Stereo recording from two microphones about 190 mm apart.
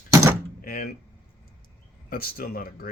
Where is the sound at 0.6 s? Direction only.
50° left (ahead or behind).